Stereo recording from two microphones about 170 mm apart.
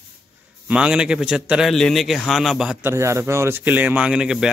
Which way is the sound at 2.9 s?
15° right (ahead or behind).